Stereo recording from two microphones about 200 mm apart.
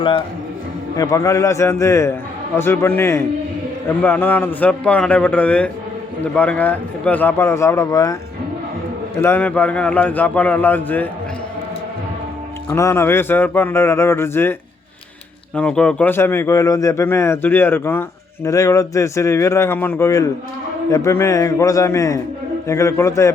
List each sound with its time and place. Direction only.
0.9 s a man's voice: 15° left (ahead or behind)
9.2 s a man's voice: 10° left (ahead or behind)
12.7 s a man's voice: 15° left (ahead or behind)
15.5 s a man's voice: 5° left (ahead or behind)